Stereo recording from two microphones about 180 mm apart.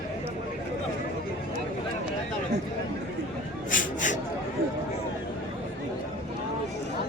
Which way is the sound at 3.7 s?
45° left (ahead or behind).